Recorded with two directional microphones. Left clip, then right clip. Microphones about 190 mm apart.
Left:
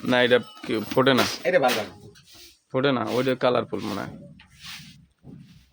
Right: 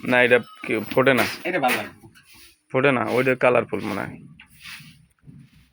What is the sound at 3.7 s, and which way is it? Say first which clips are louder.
Speech: right 3 dB; 5° right (ahead or behind).